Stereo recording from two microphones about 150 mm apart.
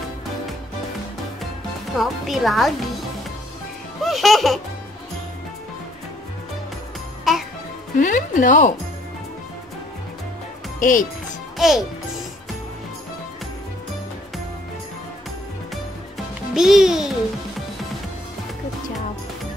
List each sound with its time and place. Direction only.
2.0 s speech: centre (ahead or behind)
4.0 s music: centre (ahead or behind)
7.3 s music: centre (ahead or behind)
8.0 s speech: 60° left (ahead or behind)
10.8 s a child's voice: 60° left (ahead or behind)
11.5 s music: centre (ahead or behind)
16.5 s speech: 5° right (ahead or behind)